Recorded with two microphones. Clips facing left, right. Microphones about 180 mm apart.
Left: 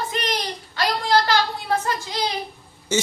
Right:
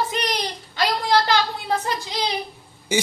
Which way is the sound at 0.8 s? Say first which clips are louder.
Even; 20° right (ahead or behind).